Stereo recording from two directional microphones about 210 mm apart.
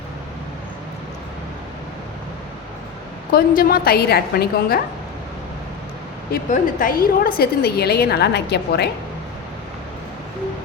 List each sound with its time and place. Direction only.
3.3 s a woman's voice: 45° left (ahead or behind)
6.3 s a woman's voice: 40° left (ahead or behind)